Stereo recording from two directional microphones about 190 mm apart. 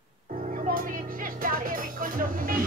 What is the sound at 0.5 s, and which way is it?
Music, 45° right (ahead or behind).